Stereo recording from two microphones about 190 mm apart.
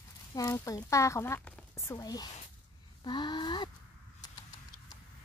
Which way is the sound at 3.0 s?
25° left (ahead or behind).